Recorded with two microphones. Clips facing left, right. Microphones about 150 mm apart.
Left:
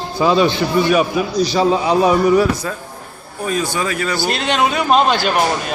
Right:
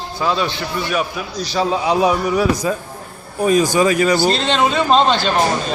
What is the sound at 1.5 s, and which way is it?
Speech, centre (ahead or behind).